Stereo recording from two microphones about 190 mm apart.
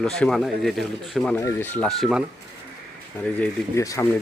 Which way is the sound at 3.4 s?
15° left (ahead or behind).